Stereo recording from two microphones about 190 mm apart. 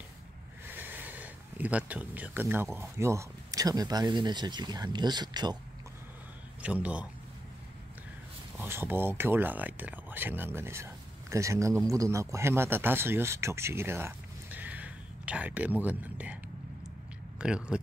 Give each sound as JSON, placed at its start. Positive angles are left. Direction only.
{"t": 0.7, "sound": "speech", "side_deg": -10}
{"t": 6.6, "sound": "a man's voice", "side_deg": -5}
{"t": 8.5, "sound": "speech", "side_deg": -10}
{"t": 17.4, "sound": "speech", "side_deg": -5}